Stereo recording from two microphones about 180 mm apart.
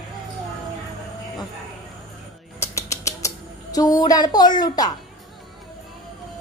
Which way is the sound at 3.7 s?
20° left (ahead or behind).